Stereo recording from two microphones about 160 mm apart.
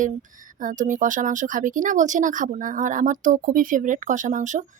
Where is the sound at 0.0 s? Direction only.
55° right (ahead or behind).